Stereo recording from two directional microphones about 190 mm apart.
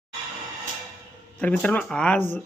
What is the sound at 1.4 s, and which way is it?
Speech, 5° left (ahead or behind).